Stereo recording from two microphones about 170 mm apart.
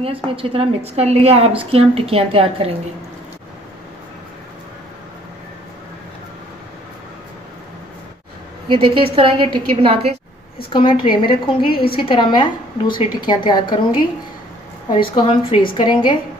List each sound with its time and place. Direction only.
0.0 s a woman's voice: 35° right (ahead or behind)
8.6 s a woman's voice: 30° right (ahead or behind)
10.7 s a woman's voice: 30° left (ahead or behind)
14.9 s a woman's voice: 30° left (ahead or behind)